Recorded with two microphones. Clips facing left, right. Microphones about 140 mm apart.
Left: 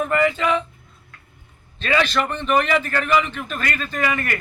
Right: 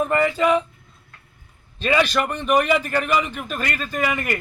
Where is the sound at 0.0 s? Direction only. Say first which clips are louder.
Even; 25° right (ahead or behind).